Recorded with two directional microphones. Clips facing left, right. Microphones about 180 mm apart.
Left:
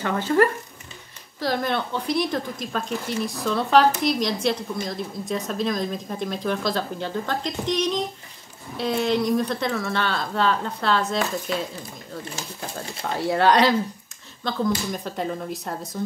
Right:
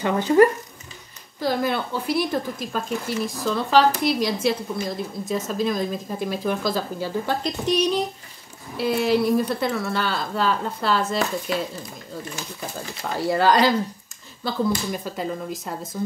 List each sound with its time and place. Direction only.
0.0 s speech: 15° right (ahead or behind)
1.4 s a woman's voice: 5° right (ahead or behind)
12.7 s a woman's voice: centre (ahead or behind)